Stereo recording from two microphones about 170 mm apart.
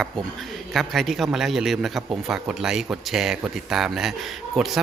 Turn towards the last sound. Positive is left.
turn(degrees=0)  # may be behind; listen again after turning